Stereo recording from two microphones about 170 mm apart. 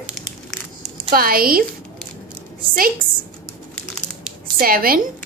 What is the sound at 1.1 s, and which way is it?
Speech, 60° right (ahead or behind).